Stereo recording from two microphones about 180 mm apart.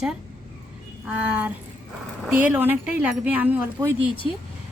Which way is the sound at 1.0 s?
10° right (ahead or behind).